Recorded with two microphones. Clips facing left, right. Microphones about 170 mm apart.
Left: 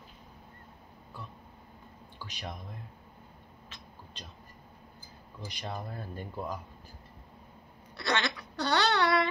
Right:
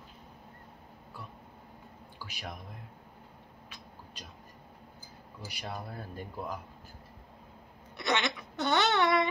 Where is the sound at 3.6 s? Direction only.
10° right (ahead or behind).